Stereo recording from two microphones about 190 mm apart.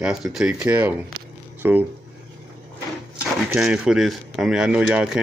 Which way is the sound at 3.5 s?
5° right (ahead or behind).